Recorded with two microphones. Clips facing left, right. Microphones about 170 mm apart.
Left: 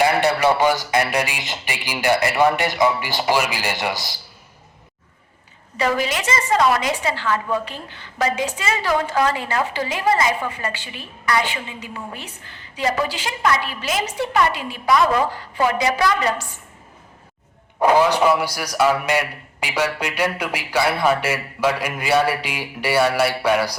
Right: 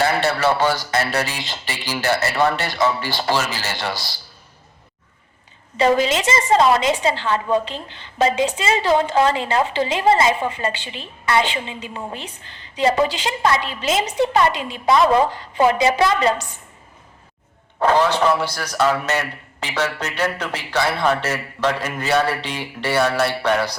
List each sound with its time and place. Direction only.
0.0 s a man's voice: 15° left (ahead or behind)
5.7 s a woman's voice: 25° right (ahead or behind)
17.7 s a man's voice: 10° left (ahead or behind)